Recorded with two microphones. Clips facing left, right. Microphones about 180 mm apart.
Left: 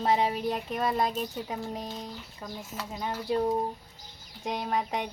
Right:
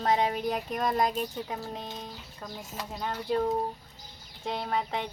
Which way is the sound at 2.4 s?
5° left (ahead or behind).